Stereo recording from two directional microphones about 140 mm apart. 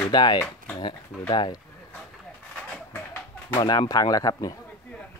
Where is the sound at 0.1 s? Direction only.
30° left (ahead or behind).